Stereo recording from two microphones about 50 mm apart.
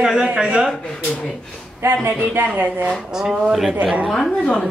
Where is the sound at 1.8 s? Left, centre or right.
Right.